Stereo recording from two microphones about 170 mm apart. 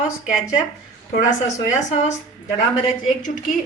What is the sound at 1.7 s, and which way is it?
Speech, 45° left (ahead or behind).